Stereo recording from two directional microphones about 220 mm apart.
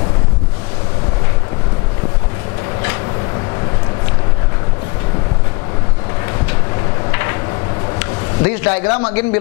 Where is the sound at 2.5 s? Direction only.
20° left (ahead or behind).